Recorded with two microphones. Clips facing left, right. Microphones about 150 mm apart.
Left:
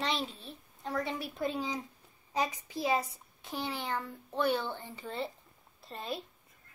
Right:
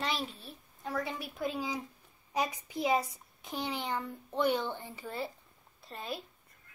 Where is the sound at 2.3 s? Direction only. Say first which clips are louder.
Even; 15° right (ahead or behind).